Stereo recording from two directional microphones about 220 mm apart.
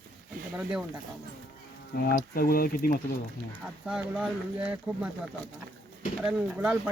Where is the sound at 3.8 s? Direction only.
5° right (ahead or behind).